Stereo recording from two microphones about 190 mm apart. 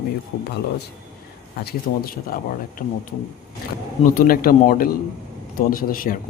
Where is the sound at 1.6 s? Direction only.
50° left (ahead or behind).